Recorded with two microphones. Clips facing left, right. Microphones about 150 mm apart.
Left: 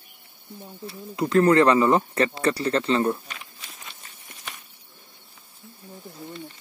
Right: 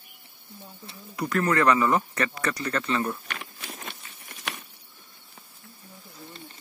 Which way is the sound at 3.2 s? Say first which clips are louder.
Right 4 dB; 60° right (ahead or behind).